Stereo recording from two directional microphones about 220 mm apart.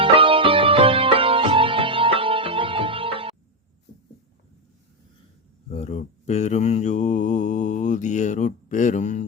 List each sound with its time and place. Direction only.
0.0 s music: 25° right (ahead or behind)
5.7 s mantra: 30° left (ahead or behind)